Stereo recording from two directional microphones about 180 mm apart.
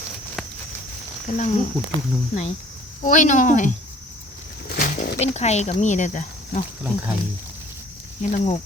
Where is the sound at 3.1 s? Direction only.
45° left (ahead or behind).